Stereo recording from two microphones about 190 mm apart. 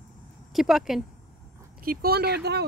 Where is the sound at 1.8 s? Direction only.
50° right (ahead or behind).